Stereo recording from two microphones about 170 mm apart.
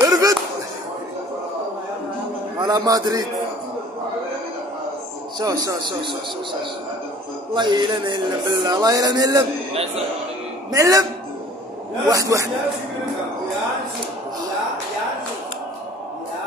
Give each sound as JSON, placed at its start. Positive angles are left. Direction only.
{"t": 0.0, "sound": "a sound", "side_deg": -20}
{"t": 2.6, "sound": "speech", "side_deg": -20}
{"t": 5.4, "sound": "speech", "side_deg": -20}
{"t": 7.5, "sound": "speech", "side_deg": -25}
{"t": 10.7, "sound": "speech", "side_deg": -20}
{"t": 12.1, "sound": "speech", "side_deg": -20}